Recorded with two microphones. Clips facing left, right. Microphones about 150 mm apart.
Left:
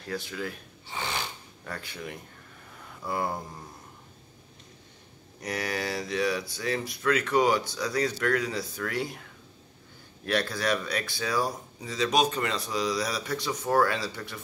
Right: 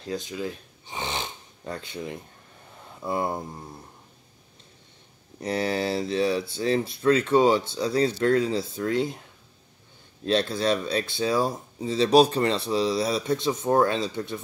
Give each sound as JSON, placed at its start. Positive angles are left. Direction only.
{"t": 0.0, "sound": "a sound", "side_deg": -20}
{"t": 3.0, "sound": "speech", "side_deg": -25}
{"t": 5.4, "sound": "speech", "side_deg": -25}
{"t": 10.2, "sound": "speech", "side_deg": -25}